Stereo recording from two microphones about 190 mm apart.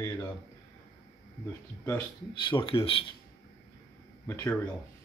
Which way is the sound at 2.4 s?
25° left (ahead or behind).